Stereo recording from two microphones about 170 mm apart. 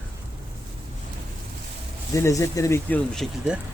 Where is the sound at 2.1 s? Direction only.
15° left (ahead or behind).